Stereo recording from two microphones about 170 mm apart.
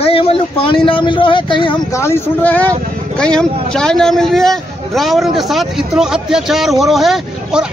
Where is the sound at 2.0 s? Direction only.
15° left (ahead or behind).